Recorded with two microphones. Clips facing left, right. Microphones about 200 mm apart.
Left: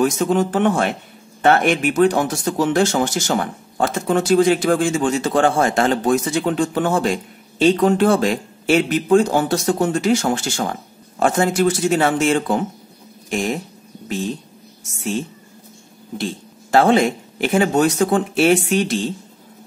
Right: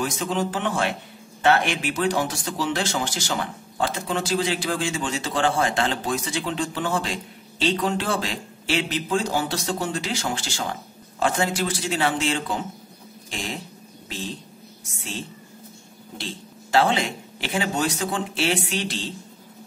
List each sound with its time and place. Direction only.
0.0 s speech: 50° left (ahead or behind)
16.2 s speech: 50° left (ahead or behind)